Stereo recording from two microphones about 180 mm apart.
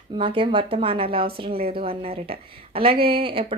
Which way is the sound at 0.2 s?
30° right (ahead or behind).